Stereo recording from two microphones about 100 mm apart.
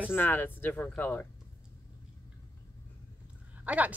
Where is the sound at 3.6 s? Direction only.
15° right (ahead or behind).